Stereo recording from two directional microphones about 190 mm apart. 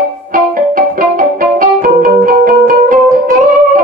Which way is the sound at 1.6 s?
45° right (ahead or behind).